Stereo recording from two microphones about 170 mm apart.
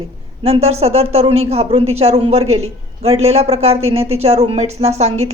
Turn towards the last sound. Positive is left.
turn(degrees=-40)  # may be behind; listen again after turning